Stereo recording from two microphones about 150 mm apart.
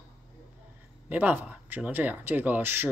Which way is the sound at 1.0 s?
10° right (ahead or behind).